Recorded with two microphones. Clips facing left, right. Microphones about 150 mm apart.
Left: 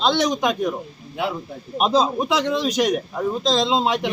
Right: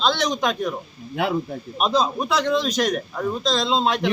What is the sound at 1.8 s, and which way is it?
Speech, 25° left (ahead or behind).